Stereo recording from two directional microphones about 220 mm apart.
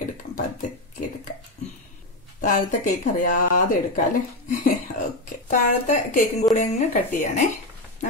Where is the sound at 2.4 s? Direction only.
35° left (ahead or behind).